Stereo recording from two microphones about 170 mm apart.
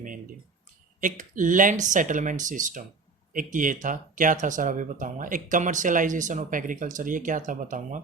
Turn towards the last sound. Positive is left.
turn(degrees=-50)  # may be behind; listen again after turning